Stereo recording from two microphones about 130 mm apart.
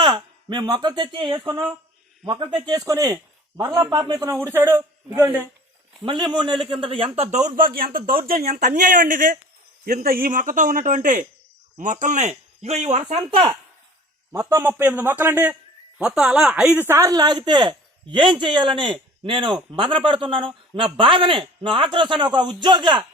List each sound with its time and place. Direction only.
0.0 s a man's voice: 35° right (ahead or behind)
6.0 s a man's voice: 35° right (ahead or behind)
7.2 s a man's voice: 65° right (ahead or behind); by 8.1 s 90° right
8.4 s a man's voice: 80° right; by 13.4 s 60° right (ahead or behind)
14.3 s a man's voice: 20° right (ahead or behind)
16.8 s a man's voice: 20° right (ahead or behind)